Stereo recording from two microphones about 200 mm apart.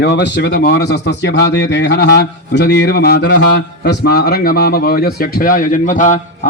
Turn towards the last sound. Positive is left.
turn(degrees=40)  # may be behind; listen again after turning